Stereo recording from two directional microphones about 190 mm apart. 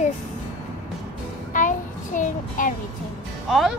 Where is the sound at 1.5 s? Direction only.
45° left (ahead or behind).